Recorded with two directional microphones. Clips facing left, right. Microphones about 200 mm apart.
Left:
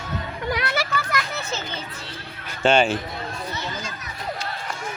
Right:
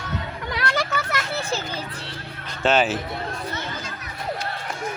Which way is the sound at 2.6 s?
Centre (ahead or behind).